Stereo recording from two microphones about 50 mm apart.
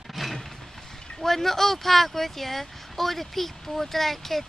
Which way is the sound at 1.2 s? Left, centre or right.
Centre.